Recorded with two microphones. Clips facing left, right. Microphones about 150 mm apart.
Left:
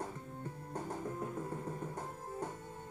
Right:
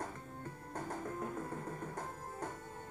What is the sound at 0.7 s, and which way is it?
Music, 15° left (ahead or behind).